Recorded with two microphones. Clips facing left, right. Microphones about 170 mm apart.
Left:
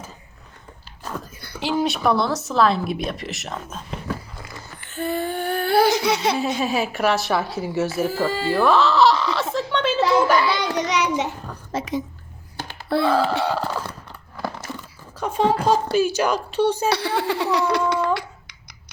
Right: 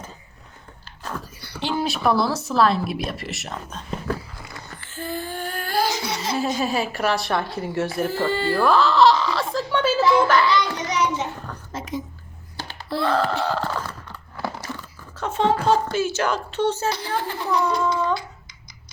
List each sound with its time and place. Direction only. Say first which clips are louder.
1.5 s speech: left 3 dB; centre (ahead or behind)
4.9 s a sound: left 6 dB; 65° left (ahead or behind)
6.6 s speech: left 1 dB; centre (ahead or behind)
9.7 s a sound: right 2 dB; 5° right (ahead or behind)
10.2 s speech: even; 10° left (ahead or behind)
10.8 s child singing: left 2 dB; 75° left (ahead or behind)
11.7 s a sound: left 5 dB; 75° left (ahead or behind)
13.0 s speech: left 2 dB; 5° left (ahead or behind)
15.2 s speech: left 1 dB; 10° left (ahead or behind)
16.9 s speech: left 5 dB; 75° left (ahead or behind)